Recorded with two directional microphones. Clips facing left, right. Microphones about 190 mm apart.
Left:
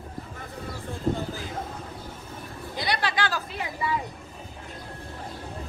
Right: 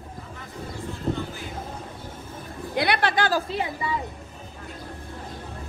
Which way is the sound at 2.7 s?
60° right (ahead or behind).